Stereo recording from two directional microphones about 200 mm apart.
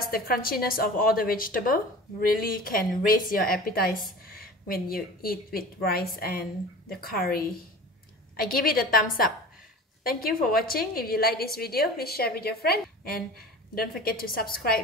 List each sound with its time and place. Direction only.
0.1 s a woman's voice: 45° left (ahead or behind)